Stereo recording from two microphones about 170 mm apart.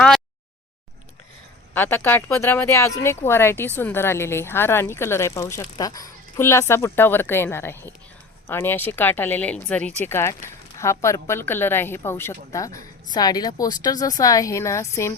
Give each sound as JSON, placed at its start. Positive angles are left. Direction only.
{"t": 1.7, "sound": "a woman's voice", "side_deg": 10}